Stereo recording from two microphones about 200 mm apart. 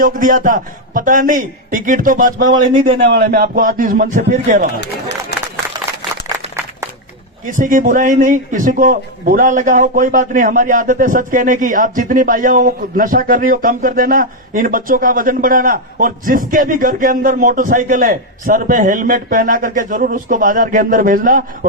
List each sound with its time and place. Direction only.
0.0 s a man's voice: 45° right (ahead or behind)
7.4 s speech: 40° right (ahead or behind)